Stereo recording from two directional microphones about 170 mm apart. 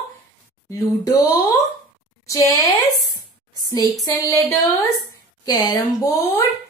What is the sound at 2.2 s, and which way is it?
Speech, 20° left (ahead or behind).